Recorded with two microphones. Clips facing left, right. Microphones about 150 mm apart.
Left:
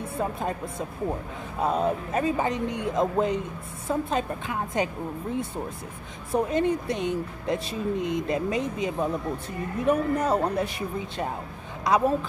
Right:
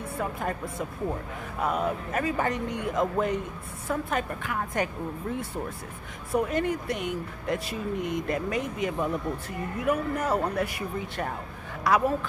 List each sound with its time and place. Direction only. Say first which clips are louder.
0.2 s speech: left 2 dB; 20° left (ahead or behind)
6.3 s speech: left 2 dB; 25° left (ahead or behind)